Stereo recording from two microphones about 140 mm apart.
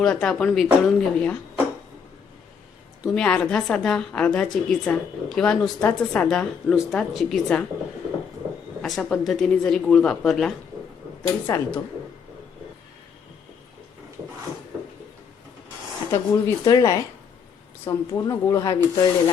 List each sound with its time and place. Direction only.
0.0 s speech: 5° left (ahead or behind)
3.0 s a woman's voice: 5° left (ahead or behind)
8.8 s speech: 5° left (ahead or behind)
11.2 s a woman's voice: 15° left (ahead or behind)
16.1 s speech: 25° left (ahead or behind)